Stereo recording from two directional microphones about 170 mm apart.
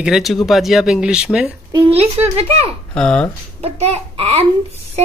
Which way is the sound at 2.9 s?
5° left (ahead or behind).